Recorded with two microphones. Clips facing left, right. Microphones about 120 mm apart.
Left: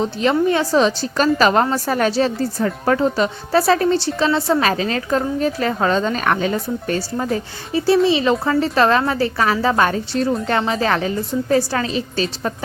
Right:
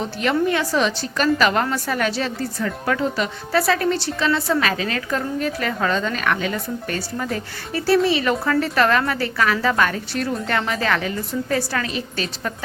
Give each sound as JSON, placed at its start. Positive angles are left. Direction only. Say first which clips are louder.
{"t": 0.0, "sound": "a woman's voice", "louder": "left 4 dB", "side_deg": 30}